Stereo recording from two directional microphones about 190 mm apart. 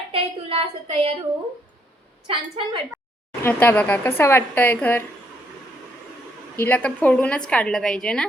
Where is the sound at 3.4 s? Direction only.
10° left (ahead or behind).